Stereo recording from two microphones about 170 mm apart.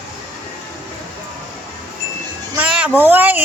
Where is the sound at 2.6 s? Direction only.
5° right (ahead or behind).